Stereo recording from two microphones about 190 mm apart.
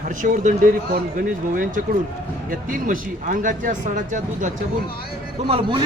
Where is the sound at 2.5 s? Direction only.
45° right (ahead or behind).